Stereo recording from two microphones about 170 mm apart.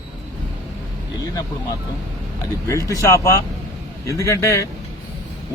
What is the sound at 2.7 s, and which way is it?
A man's voice, 20° left (ahead or behind).